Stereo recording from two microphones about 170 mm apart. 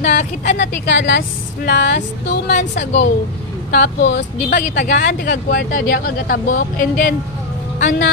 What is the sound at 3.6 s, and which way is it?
Speech, 80° left.